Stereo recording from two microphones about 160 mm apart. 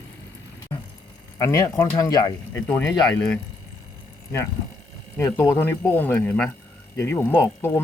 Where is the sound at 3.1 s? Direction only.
10° left (ahead or behind).